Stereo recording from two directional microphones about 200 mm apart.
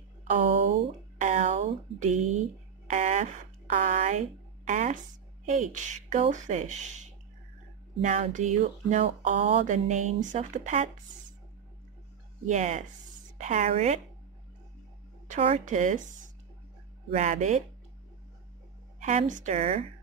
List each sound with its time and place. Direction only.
0.3 s a sound: 40° right (ahead or behind)
2.9 s speech: 35° right (ahead or behind)
12.4 s speech: 35° right (ahead or behind)
15.2 s speech: 35° right (ahead or behind)
17.1 s speech: 35° right (ahead or behind)
18.9 s speech: 35° right (ahead or behind)